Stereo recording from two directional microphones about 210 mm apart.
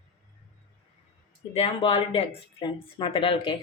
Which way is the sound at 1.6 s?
25° left (ahead or behind).